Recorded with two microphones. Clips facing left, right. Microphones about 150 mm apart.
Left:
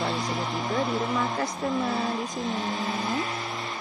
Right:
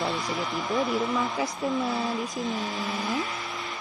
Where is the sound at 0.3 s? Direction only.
25° left (ahead or behind).